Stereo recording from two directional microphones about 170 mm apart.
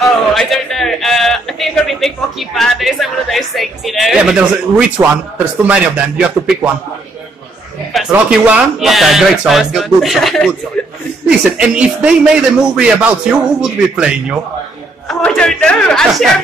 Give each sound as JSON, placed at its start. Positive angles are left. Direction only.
{"t": 0.3, "sound": "a man's voice", "side_deg": 0}
{"t": 7.9, "sound": "a sound", "side_deg": 0}
{"t": 8.3, "sound": "a man's voice", "side_deg": -5}
{"t": 15.0, "sound": "a man's voice", "side_deg": 5}